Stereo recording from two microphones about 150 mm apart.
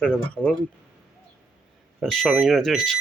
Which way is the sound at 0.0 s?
5° left (ahead or behind).